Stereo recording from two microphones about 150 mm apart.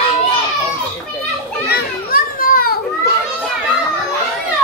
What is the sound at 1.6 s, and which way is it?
Children playing, 85° left.